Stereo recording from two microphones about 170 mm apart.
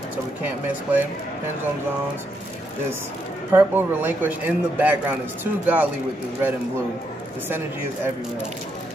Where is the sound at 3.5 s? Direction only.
10° right (ahead or behind).